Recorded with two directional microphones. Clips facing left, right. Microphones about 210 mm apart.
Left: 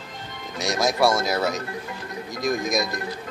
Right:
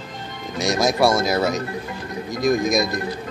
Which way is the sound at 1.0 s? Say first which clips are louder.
Right 2 dB; 20° right (ahead or behind).